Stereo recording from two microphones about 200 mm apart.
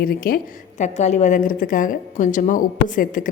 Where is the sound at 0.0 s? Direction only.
45° left (ahead or behind).